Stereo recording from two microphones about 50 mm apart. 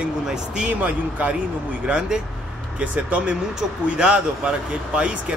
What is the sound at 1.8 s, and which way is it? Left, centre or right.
Speech, right.